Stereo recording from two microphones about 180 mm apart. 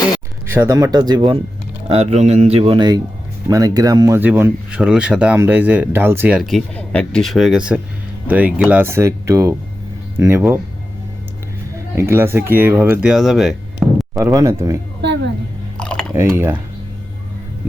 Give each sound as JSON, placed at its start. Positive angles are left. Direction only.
{"t": 0.4, "sound": "speech", "side_deg": -15}
{"t": 1.9, "sound": "speech", "side_deg": -35}
{"t": 11.9, "sound": "speech", "side_deg": -15}
{"t": 14.2, "sound": "speech", "side_deg": -15}
{"t": 15.0, "sound": "a woman's voice", "side_deg": -75}
{"t": 15.8, "sound": "chewing", "side_deg": 5}
{"t": 16.1, "sound": "speech", "side_deg": -15}